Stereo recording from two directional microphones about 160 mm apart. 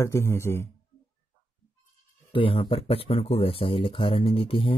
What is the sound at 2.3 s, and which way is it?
Speech, 35° left (ahead or behind).